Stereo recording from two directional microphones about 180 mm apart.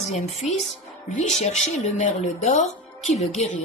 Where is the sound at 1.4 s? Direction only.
40° left (ahead or behind).